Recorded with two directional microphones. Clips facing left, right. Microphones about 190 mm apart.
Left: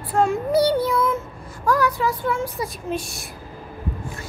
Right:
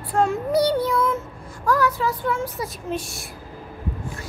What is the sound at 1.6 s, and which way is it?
Speech, 15° left (ahead or behind).